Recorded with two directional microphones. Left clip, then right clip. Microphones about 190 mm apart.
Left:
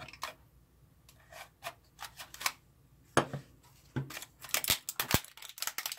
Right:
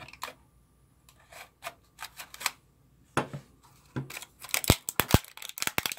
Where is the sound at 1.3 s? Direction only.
20° right (ahead or behind).